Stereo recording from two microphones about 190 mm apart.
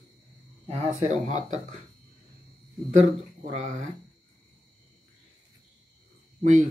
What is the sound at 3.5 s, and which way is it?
Speech, 40° right (ahead or behind).